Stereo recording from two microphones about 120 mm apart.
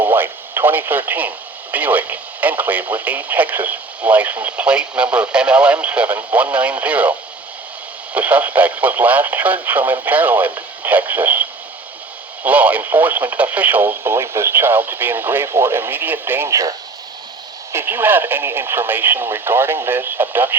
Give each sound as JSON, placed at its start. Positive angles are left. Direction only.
{"t": 0.0, "sound": "speech", "side_deg": -15}
{"t": 8.1, "sound": "speech", "side_deg": -10}